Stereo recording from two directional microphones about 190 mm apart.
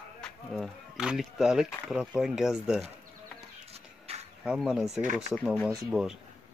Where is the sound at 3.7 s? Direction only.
35° right (ahead or behind).